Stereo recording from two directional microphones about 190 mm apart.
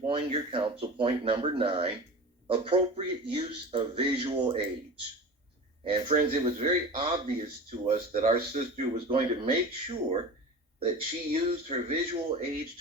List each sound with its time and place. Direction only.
0.0 s speech: 30° right (ahead or behind)
5.8 s speech: 30° right (ahead or behind)